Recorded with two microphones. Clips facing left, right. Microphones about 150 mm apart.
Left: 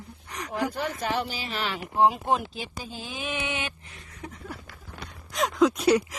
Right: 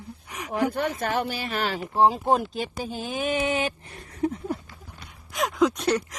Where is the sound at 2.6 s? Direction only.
50° right (ahead or behind).